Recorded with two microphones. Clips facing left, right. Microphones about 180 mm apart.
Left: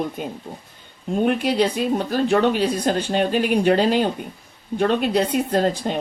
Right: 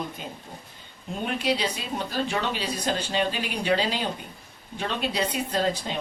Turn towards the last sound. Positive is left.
turn(degrees=50)  # may be behind; listen again after turning